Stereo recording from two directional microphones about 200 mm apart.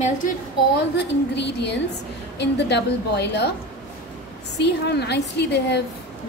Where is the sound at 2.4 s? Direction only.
60° left (ahead or behind).